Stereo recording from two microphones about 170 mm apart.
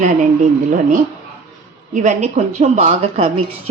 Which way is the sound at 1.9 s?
45° right (ahead or behind).